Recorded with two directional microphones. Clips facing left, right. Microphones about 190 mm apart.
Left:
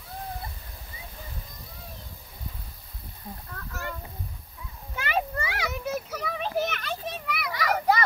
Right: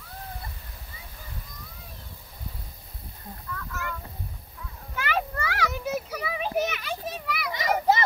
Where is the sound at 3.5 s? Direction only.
35° left (ahead or behind).